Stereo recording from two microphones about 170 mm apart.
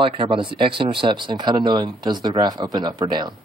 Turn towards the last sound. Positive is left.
turn(degrees=-25)  # may be behind; listen again after turning